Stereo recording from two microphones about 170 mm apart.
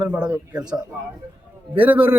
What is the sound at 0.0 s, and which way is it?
Speech, 10° right (ahead or behind).